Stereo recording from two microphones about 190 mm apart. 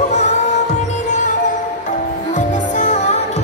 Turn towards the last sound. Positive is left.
turn(degrees=40)  # may be behind; listen again after turning